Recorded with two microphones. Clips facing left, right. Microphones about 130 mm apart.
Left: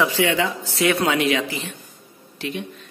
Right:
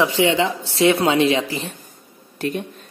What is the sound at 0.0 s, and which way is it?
Speech, 20° right (ahead or behind).